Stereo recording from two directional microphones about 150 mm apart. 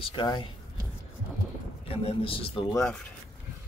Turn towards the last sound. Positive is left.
turn(degrees=5)  # may be behind; listen again after turning